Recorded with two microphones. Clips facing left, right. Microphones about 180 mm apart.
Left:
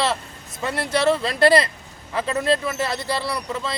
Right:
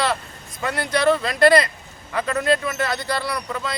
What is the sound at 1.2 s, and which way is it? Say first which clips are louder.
Speech: right 1 dB; 30° left (ahead or behind).